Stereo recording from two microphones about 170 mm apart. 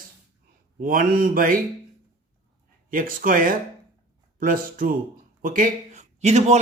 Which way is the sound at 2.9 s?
55° right (ahead or behind).